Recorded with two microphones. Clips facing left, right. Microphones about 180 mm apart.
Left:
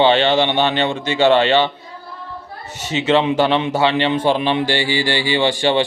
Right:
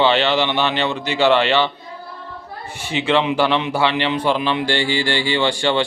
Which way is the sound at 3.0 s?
25° left (ahead or behind).